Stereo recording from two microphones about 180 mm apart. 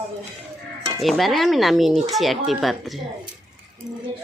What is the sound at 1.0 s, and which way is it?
A woman's voice, centre (ahead or behind).